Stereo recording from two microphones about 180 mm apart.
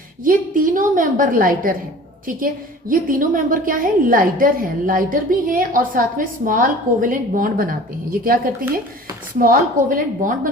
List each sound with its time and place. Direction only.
0.3 s a woman's voice: 50° right (ahead or behind)
2.9 s a woman's voice: 50° right (ahead or behind)
9.4 s a woman's voice: 50° right (ahead or behind)